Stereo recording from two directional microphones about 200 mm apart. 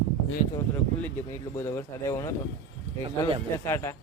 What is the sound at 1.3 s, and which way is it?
Speech, 15° left (ahead or behind).